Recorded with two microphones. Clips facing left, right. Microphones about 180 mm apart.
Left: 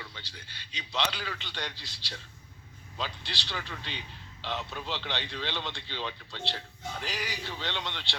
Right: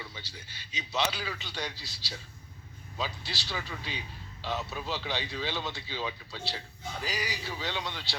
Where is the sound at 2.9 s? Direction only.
5° right (ahead or behind).